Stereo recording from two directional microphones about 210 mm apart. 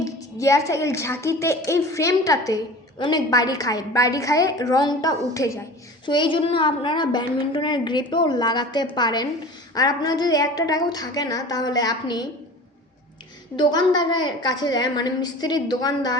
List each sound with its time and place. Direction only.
0.0 s a woman's voice: 15° left (ahead or behind)
13.6 s a woman's voice: 20° left (ahead or behind)